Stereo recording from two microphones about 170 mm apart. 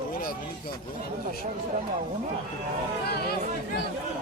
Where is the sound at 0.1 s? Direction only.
60° left (ahead or behind).